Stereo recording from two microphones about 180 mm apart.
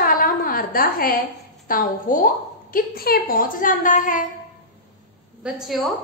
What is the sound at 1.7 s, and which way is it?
A woman's voice, 50° left (ahead or behind).